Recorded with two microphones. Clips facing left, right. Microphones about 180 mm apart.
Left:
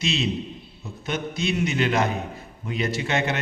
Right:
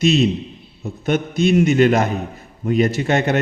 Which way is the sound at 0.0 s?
45° right (ahead or behind).